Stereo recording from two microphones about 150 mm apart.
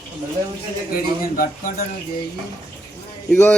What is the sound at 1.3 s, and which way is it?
Speech, 65° left (ahead or behind).